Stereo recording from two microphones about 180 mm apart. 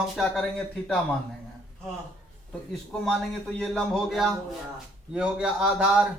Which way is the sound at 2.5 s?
5° left (ahead or behind).